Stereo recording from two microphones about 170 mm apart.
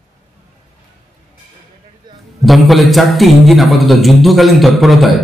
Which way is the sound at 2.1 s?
25° right (ahead or behind).